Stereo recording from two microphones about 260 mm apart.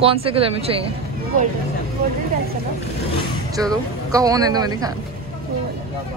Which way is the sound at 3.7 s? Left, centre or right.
Centre.